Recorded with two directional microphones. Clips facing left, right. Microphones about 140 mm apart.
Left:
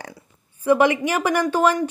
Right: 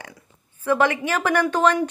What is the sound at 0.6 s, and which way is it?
Speech, 15° left (ahead or behind).